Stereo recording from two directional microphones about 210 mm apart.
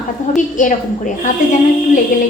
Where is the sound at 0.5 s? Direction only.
40° left (ahead or behind).